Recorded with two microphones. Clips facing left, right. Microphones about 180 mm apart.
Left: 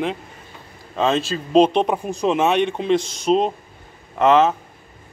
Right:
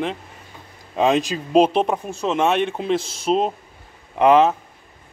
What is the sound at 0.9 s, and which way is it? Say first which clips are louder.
Speech: right 2 dB; 15° right (ahead or behind).